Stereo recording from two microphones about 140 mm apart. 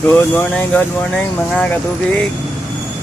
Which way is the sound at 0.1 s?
15° left (ahead or behind).